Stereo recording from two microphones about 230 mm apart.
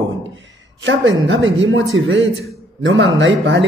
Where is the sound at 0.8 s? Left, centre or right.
Right.